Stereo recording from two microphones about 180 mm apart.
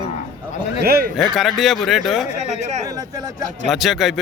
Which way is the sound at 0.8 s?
60° right (ahead or behind).